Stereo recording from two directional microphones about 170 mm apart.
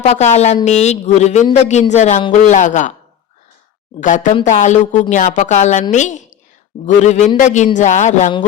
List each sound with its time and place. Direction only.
0.0 s a woman's voice: 40° left (ahead or behind)
4.0 s a woman's voice: 50° left (ahead or behind)